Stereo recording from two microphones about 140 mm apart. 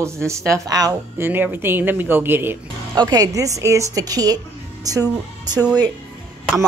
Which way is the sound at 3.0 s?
30° right (ahead or behind).